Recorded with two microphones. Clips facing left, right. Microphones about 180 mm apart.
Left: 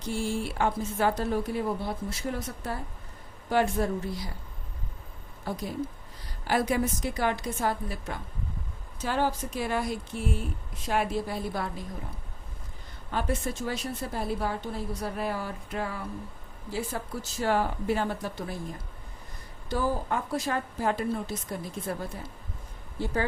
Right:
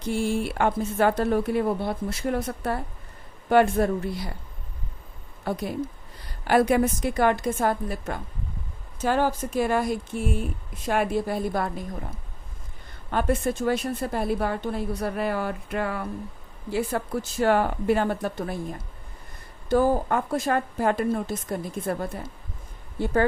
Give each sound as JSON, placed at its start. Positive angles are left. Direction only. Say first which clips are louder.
{"t": 0.1, "sound": "a woman's voice", "louder": "right 5 dB", "side_deg": -60}
{"t": 5.5, "sound": "a woman's voice", "louder": "right 4 dB", "side_deg": -65}
{"t": 13.1, "sound": "a woman's voice", "louder": "right 6 dB", "side_deg": -55}
{"t": 19.6, "sound": "a woman's voice", "louder": "right 8 dB", "side_deg": -50}